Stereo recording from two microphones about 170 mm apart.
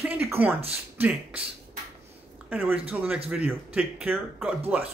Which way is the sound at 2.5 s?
10° right (ahead or behind).